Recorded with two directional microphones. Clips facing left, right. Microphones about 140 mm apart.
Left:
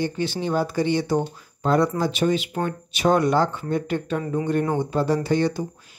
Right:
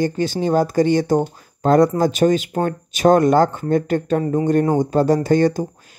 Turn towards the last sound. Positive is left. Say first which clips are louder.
# right 6 dB
turn(degrees=-45)  # may be behind; listen again after turning